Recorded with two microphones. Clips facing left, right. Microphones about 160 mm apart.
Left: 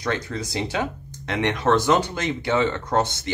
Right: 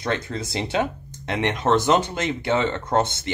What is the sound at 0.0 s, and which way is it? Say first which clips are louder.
Speech: even; 25° right (ahead or behind).